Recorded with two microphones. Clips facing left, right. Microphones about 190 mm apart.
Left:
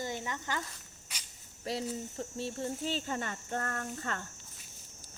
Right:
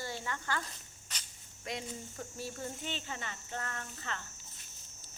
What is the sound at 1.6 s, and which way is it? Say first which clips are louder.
Speech: left 6 dB; 30° left (ahead or behind).